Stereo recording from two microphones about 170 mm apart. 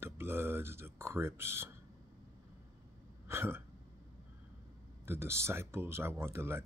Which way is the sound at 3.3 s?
15° right (ahead or behind).